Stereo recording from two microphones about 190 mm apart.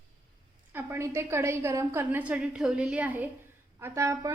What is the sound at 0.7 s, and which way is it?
A woman's voice, 10° right (ahead or behind).